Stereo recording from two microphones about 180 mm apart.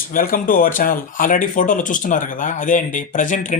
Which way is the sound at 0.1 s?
50° left (ahead or behind).